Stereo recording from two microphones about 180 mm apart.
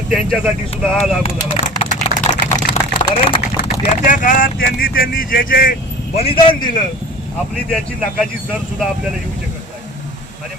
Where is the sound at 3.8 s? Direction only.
45° left (ahead or behind).